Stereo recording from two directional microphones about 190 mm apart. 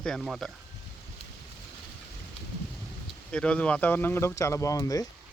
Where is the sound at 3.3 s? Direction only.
5° left (ahead or behind).